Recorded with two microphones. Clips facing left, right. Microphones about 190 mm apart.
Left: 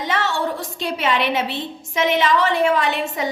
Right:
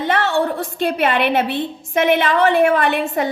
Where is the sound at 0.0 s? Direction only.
55° right (ahead or behind).